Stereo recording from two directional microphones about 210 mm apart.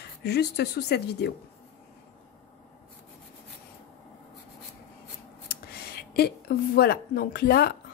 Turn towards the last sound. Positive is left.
turn(degrees=45)  # may be behind; listen again after turning